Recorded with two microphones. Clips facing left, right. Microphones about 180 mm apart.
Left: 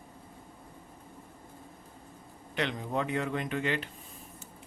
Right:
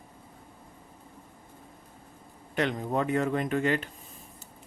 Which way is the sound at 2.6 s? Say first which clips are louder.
Right 4 dB; 45° right (ahead or behind).